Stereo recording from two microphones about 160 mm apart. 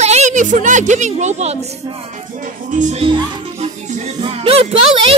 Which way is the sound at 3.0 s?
35° right (ahead or behind).